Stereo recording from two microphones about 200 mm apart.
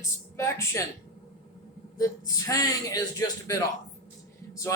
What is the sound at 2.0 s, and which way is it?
A man's voice, 15° left (ahead or behind).